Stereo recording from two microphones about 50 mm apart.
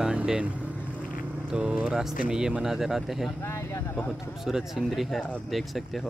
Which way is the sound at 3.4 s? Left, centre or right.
Left.